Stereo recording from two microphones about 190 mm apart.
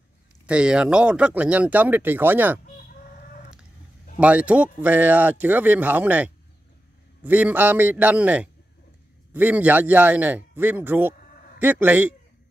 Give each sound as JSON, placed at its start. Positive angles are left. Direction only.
{"t": 0.5, "sound": "speech", "side_deg": -5}
{"t": 2.6, "sound": "chicken", "side_deg": 50}
{"t": 4.2, "sound": "speech", "side_deg": -5}